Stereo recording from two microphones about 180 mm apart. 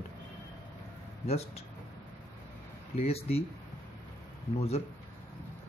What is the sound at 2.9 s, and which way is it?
Speech, 35° left (ahead or behind).